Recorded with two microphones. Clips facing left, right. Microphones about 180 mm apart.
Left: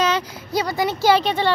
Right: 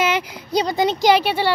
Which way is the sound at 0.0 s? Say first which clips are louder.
Even; 15° right (ahead or behind).